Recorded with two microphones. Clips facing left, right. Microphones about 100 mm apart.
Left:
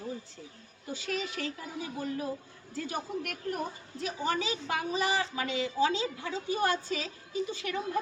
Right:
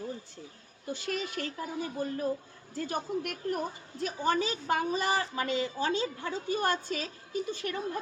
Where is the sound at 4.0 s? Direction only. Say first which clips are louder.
Right 3 dB; 50° right (ahead or behind).